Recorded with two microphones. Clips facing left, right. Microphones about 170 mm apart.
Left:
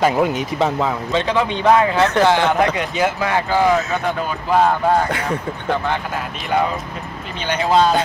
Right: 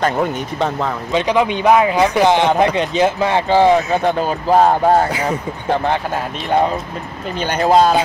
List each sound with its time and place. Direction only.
0.0 s speech: 5° left (ahead or behind)
1.1 s speech: 15° right (ahead or behind); by 5.0 s 35° right (ahead or behind)
7.4 s speech: 45° right (ahead or behind)